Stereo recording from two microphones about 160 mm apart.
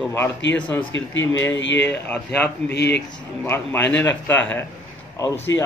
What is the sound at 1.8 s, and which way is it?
Speech, 10° left (ahead or behind).